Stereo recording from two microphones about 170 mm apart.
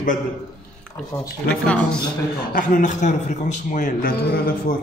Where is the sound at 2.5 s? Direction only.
50° left (ahead or behind).